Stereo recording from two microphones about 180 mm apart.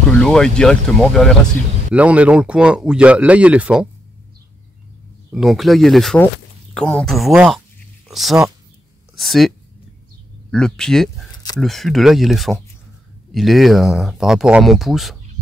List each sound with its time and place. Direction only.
0.2 s speech: 5° left (ahead or behind)
5.3 s speech: centre (ahead or behind)
10.5 s speech: 5° left (ahead or behind)